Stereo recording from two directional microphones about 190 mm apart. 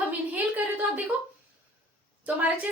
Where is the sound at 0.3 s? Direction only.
10° right (ahead or behind).